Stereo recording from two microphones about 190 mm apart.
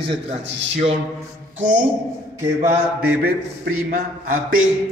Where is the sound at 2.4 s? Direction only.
15° right (ahead or behind).